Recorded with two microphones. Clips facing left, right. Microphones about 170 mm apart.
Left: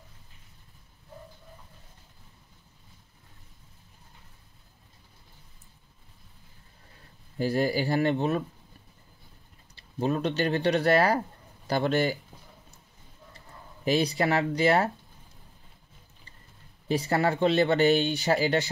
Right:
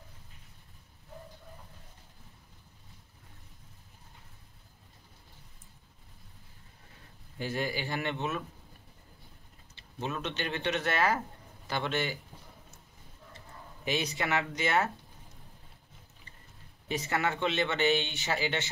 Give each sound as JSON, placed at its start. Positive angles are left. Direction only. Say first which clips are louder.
{"t": 7.3, "sound": "speech", "louder": "left 8 dB", "side_deg": 35}
{"t": 9.8, "sound": "speech", "louder": "left 9 dB", "side_deg": 35}
{"t": 13.8, "sound": "speech", "louder": "left 7 dB", "side_deg": 35}
{"t": 16.8, "sound": "speech", "louder": "left 6 dB", "side_deg": 35}